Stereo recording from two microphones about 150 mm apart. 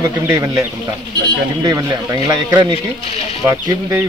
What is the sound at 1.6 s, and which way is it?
Speech, 25° right (ahead or behind).